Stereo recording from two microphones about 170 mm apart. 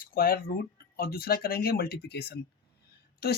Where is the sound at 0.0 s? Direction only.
60° left (ahead or behind).